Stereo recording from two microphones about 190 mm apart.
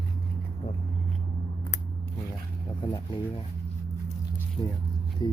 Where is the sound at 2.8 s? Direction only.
25° left (ahead or behind).